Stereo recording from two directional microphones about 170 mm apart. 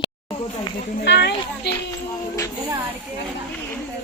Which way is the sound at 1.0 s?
85° left.